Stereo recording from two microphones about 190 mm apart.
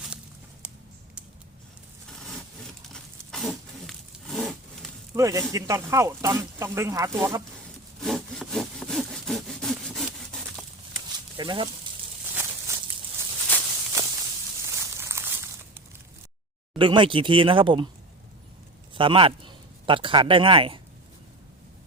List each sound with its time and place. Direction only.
0.6 s a sound: 5° right (ahead or behind)
2.1 s a sound: 5° left (ahead or behind)
2.9 s wild animals: centre (ahead or behind)
5.1 s speech: 15° right (ahead or behind)
8.0 s sawing: centre (ahead or behind)
10.2 s wood: centre (ahead or behind)
11.3 s speech: 25° right (ahead or behind)
12.3 s a sound: 15° right (ahead or behind)
13.5 s walk: 10° left (ahead or behind)
14.7 s a sound: 15° right (ahead or behind)
16.7 s speech: 25° right (ahead or behind)
18.9 s a man's voice: 25° right (ahead or behind)